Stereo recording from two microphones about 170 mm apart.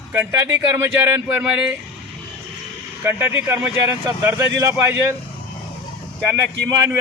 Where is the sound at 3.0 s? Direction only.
10° right (ahead or behind).